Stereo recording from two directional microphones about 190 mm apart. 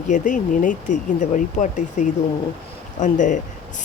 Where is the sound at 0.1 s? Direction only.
40° left (ahead or behind).